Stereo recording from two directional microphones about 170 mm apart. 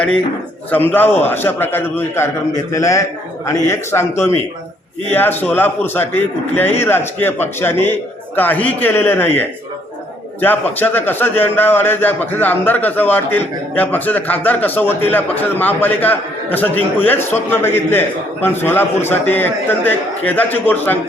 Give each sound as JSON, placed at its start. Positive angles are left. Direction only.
{"t": 0.7, "sound": "a man's voice", "side_deg": 10}